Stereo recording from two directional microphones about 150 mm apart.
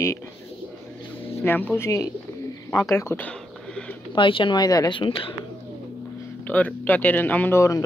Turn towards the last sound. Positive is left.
turn(degrees=20)  # may be behind; listen again after turning